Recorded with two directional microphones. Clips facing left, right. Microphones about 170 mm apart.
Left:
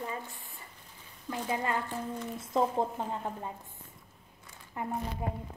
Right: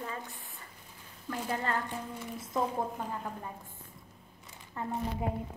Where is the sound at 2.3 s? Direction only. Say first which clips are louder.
Left 3 dB; 25° left (ahead or behind).